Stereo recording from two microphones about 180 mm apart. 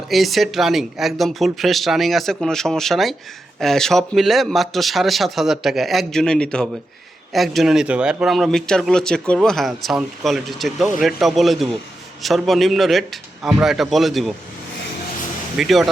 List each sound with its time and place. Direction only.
0.1 s speech: centre (ahead or behind)
15.5 s speech: centre (ahead or behind)